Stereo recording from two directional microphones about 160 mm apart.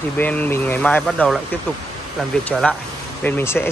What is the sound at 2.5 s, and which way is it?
Speech, centre (ahead or behind).